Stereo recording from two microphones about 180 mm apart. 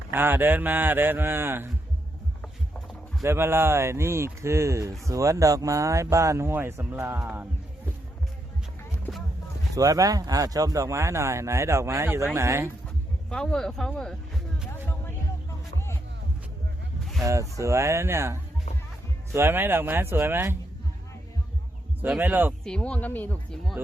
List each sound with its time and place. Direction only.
0.1 s speech: 10° right (ahead or behind)
2.4 s a sound: 5° left (ahead or behind)
3.2 s speech: 15° right (ahead or behind)
9.7 s speech: 20° right (ahead or behind)
13.3 s speech: 5° left (ahead or behind)
17.2 s speech: 15° right (ahead or behind)
22.0 s speech: 5° right (ahead or behind)
22.6 s speech: 5° left (ahead or behind)